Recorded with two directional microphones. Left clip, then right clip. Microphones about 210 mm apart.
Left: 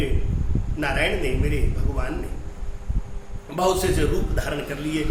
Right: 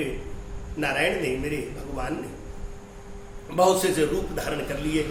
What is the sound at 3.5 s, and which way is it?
A man's voice, 15° left (ahead or behind).